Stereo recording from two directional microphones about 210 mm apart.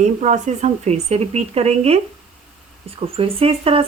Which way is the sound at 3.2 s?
25° right (ahead or behind).